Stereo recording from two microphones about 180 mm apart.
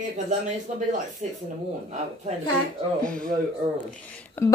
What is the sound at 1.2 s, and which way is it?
Speech, 40° right (ahead or behind).